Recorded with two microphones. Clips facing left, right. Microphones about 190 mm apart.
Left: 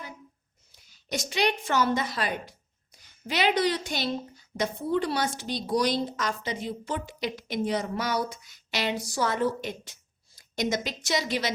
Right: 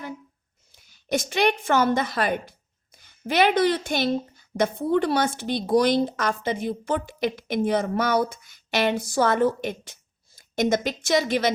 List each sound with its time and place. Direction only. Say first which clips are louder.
1.1 s speech: right 5 dB; 55° right (ahead or behind)